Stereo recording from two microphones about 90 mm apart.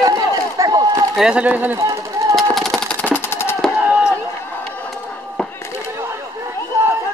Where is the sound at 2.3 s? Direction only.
Centre (ahead or behind).